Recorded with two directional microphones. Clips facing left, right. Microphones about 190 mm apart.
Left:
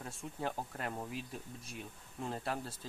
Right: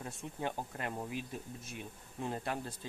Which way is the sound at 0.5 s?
5° right (ahead or behind).